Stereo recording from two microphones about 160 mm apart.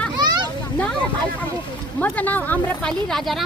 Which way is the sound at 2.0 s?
10° left (ahead or behind).